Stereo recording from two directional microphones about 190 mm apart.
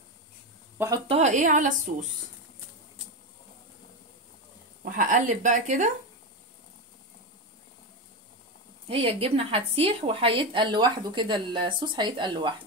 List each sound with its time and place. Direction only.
0.7 s speech: 20° right (ahead or behind)
1.0 s a woman's voice: 35° right (ahead or behind)
4.8 s a woman's voice: 45° right (ahead or behind)
8.8 s a woman's voice: 30° right (ahead or behind)